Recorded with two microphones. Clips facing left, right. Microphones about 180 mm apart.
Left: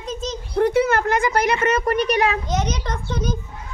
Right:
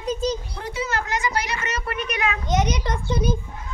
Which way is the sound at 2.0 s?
35° left (ahead or behind).